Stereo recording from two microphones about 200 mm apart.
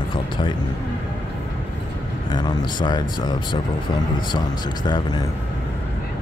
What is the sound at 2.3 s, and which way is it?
Speech, 20° left (ahead or behind).